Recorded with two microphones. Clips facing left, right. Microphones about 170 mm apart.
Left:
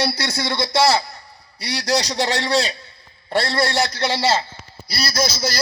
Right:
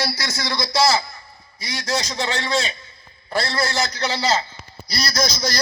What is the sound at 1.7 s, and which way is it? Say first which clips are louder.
A man's voice: left 4 dB; 35° left (ahead or behind).